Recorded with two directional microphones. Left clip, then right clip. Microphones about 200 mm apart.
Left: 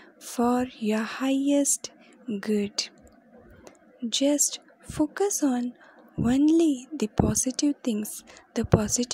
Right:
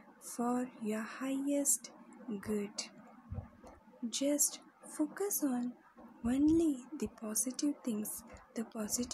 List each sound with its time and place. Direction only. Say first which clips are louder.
0.4 s a woman's voice: left 12 dB; 40° left (ahead or behind)